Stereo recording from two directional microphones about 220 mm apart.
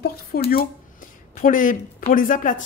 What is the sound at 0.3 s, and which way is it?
A woman's voice, 45° left (ahead or behind).